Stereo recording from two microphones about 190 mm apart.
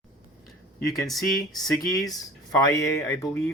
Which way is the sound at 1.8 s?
20° left (ahead or behind).